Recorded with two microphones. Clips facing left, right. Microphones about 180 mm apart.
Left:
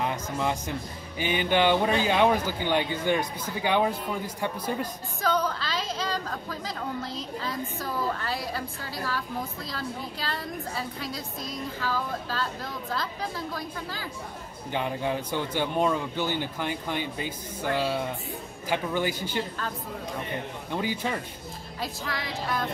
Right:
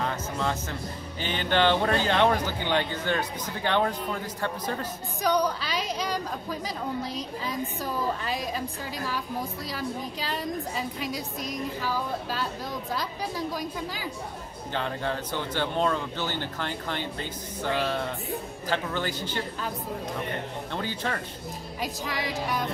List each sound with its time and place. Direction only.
0.0 s a sound: 15° left (ahead or behind)
1.2 s a man's voice: 10° left (ahead or behind)
5.2 s a woman's voice: 15° right (ahead or behind)
14.7 s a man's voice: 15° left (ahead or behind)
20.7 s a man's voice: 10° left (ahead or behind)
21.8 s a woman's voice: 15° right (ahead or behind)